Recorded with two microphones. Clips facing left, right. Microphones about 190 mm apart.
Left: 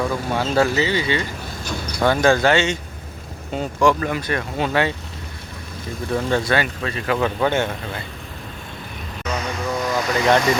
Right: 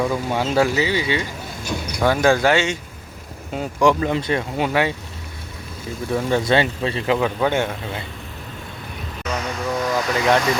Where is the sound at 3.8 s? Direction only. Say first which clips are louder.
Right 1 dB; 20° right (ahead or behind).